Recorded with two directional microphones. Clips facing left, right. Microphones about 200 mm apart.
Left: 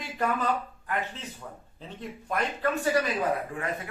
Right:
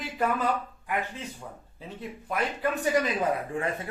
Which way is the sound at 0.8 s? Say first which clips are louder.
Right 2 dB; 10° right (ahead or behind).